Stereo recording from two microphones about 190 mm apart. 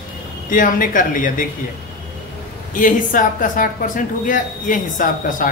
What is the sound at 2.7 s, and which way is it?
Speech, 45° left (ahead or behind).